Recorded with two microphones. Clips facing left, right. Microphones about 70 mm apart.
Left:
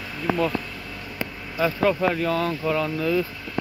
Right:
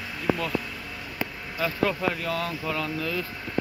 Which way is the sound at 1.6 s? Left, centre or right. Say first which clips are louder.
Left 5 dB; centre.